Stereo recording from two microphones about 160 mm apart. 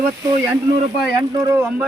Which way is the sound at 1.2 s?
15° right (ahead or behind).